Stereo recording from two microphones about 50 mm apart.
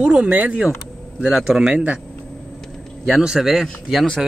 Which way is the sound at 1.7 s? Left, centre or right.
Right.